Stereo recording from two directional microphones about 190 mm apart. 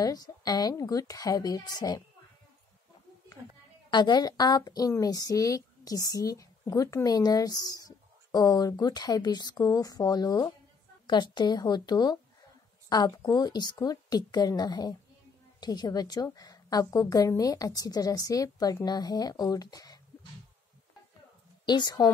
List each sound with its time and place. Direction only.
0.0 s a woman's voice: 20° left (ahead or behind)
3.9 s a woman's voice: 20° left (ahead or behind)
21.6 s a woman's voice: 20° left (ahead or behind)